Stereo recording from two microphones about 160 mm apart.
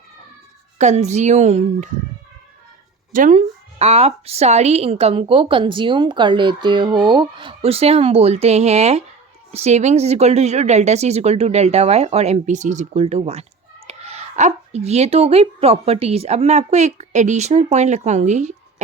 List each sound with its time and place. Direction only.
0.8 s a woman's voice: 45° right (ahead or behind)
3.1 s a woman's voice: 55° right (ahead or behind)